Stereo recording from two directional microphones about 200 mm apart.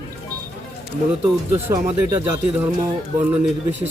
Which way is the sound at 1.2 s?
10° right (ahead or behind).